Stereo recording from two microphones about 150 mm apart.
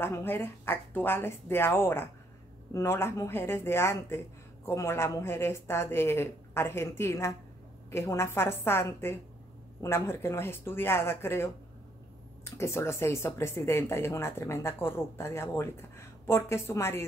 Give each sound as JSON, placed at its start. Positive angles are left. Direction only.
{"t": 0.0, "sound": "speech", "side_deg": 15}